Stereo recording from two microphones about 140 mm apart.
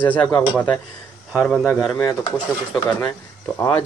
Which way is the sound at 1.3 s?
5° right (ahead or behind).